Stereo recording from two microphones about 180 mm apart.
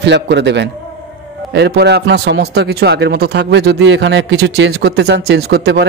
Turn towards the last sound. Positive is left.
turn(degrees=-65)  # may be behind; listen again after turning